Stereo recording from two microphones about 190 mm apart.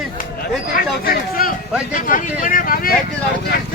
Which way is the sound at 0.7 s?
50° left (ahead or behind).